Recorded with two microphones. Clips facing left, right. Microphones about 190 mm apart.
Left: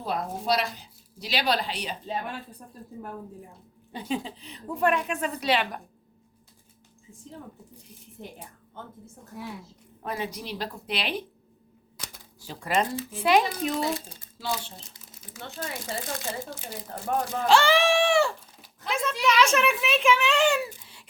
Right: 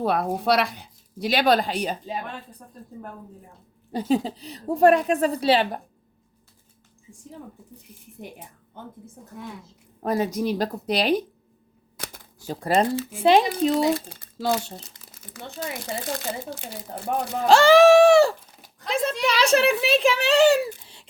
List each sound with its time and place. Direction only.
0.0 s speech: 65° right (ahead or behind); by 2.0 s 45° right (ahead or behind)
3.9 s a woman's voice: 40° right (ahead or behind)
10.0 s a woman's voice: 40° right (ahead or behind)
11.9 s typewriter: 60° right (ahead or behind); by 12.9 s 35° right (ahead or behind)
13.2 s a woman's voice: 30° right (ahead or behind)
14.1 s a sound: 70° right (ahead or behind)
17.4 s a woman's voice: 40° right (ahead or behind)